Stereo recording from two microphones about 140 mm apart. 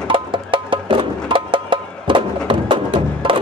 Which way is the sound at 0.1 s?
35° right (ahead or behind).